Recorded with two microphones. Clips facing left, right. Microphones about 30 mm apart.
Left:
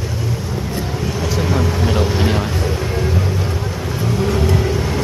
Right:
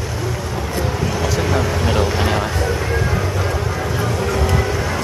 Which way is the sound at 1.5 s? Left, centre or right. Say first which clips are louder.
Even; centre.